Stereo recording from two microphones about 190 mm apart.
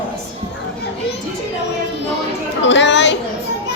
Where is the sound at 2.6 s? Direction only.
70° left (ahead or behind).